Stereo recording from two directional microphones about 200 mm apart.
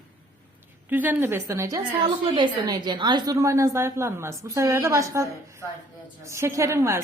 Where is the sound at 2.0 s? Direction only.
25° right (ahead or behind).